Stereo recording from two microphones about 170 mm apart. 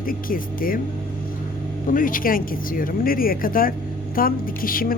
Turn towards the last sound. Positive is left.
turn(degrees=55)  # may be behind; listen again after turning